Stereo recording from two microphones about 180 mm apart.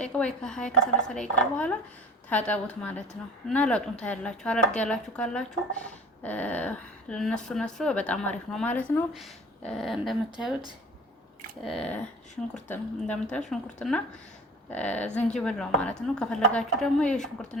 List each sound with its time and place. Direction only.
0.0 s speech: 5° left (ahead or behind)
11.6 s speech: 5° left (ahead or behind)